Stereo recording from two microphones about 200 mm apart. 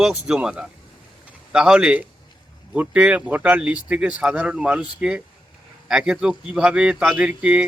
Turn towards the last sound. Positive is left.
turn(degrees=-5)  # may be behind; listen again after turning